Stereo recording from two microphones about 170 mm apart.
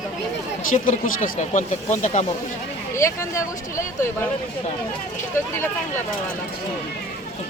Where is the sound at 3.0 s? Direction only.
15° left (ahead or behind).